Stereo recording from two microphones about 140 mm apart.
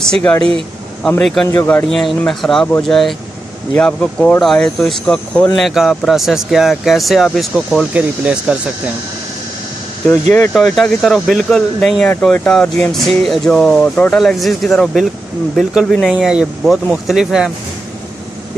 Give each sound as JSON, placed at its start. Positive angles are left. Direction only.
{"t": 0.0, "sound": "speech", "side_deg": 5}
{"t": 0.4, "sound": "speech", "side_deg": -40}
{"t": 1.0, "sound": "speech", "side_deg": 5}
{"t": 7.9, "sound": "speech", "side_deg": -10}
{"t": 10.5, "sound": "speech", "side_deg": 5}